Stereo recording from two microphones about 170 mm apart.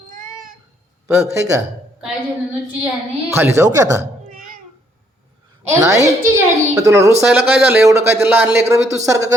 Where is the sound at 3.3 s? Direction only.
15° right (ahead or behind).